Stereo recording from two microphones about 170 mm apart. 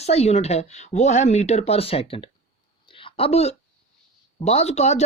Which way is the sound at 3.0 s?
35° left (ahead or behind).